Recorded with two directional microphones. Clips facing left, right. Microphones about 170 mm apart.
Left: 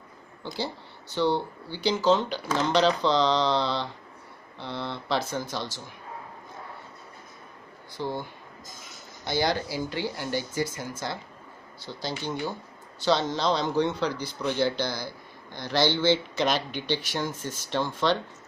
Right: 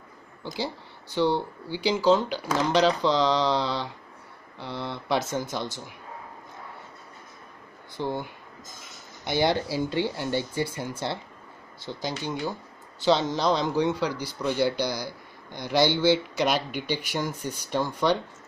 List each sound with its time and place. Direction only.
0.4 s speech: 15° right (ahead or behind)
8.0 s speech: 15° right (ahead or behind)